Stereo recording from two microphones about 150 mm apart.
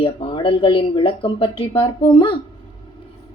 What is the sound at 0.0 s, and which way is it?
A woman's voice, 35° left (ahead or behind).